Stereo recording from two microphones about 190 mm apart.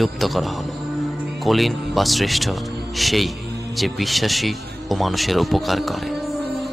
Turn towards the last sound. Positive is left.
turn(degrees=0)  # may be behind; listen again after turning